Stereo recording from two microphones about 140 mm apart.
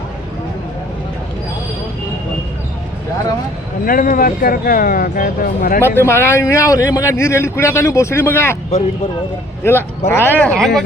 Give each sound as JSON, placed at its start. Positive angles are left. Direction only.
{"t": 3.8, "sound": "speech", "side_deg": 90}
{"t": 6.0, "sound": "a man's voice", "side_deg": 20}
{"t": 9.6, "sound": "a man's voice", "side_deg": 20}